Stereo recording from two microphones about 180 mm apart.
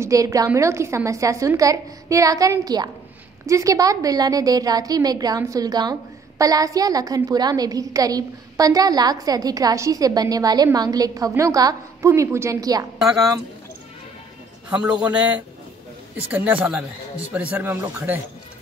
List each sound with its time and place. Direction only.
0.0 s a woman's voice: 20° right (ahead or behind)
13.0 s speech: 5° right (ahead or behind)
14.7 s speech: 5° right (ahead or behind)
16.3 s a woman's voice: 10° right (ahead or behind)